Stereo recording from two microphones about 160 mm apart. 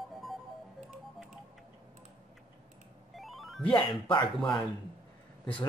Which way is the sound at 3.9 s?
30° left (ahead or behind).